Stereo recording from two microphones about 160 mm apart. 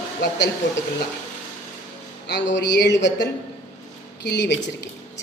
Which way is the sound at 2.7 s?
90° left.